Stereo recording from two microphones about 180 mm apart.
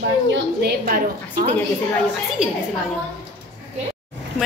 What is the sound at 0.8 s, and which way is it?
Speech, 55° right (ahead or behind).